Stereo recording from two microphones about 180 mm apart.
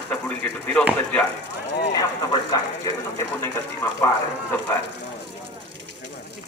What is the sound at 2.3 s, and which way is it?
Speech, 20° left (ahead or behind).